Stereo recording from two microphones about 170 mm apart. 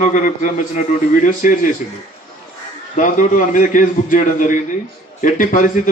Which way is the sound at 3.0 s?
50° left (ahead or behind).